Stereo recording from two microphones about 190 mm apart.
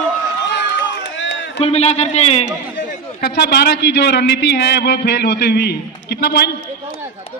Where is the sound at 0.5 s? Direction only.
65° left (ahead or behind).